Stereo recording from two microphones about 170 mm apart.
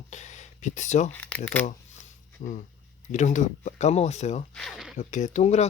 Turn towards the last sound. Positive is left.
turn(degrees=40)  # may be behind; listen again after turning